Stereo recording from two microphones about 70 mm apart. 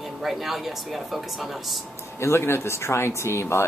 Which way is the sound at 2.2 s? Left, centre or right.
Left.